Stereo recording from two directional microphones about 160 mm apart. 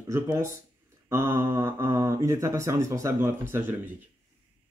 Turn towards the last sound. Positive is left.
turn(degrees=-15)  # may be behind; listen again after turning